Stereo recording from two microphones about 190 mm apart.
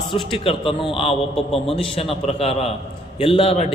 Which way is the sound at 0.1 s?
30° left (ahead or behind).